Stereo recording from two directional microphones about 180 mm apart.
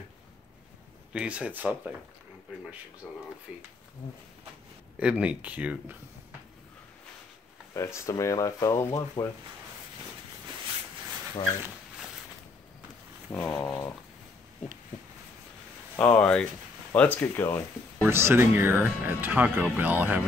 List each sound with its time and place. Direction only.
1.1 s speech: 5° right (ahead or behind)
3.0 s speech: centre (ahead or behind)
4.9 s speech: 5° right (ahead or behind)
7.7 s speech: 15° left (ahead or behind)
13.3 s speech: 5° left (ahead or behind)
16.0 s speech: 5° left (ahead or behind)
18.0 s speech: 15° right (ahead or behind)